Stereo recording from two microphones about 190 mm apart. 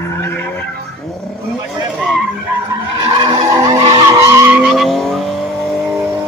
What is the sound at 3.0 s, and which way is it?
Vehicle, 20° right (ahead or behind).